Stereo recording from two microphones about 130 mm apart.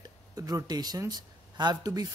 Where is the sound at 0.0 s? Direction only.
25° right (ahead or behind).